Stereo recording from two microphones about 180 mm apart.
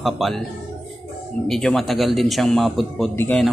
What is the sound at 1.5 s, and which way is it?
Speech, centre (ahead or behind).